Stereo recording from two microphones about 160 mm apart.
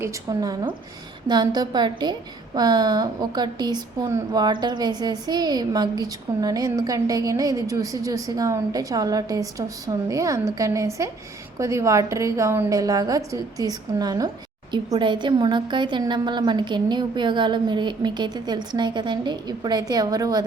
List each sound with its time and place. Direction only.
0.0 s a woman's voice: 20° right (ahead or behind)